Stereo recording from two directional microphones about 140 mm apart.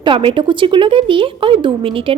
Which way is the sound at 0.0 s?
35° right (ahead or behind).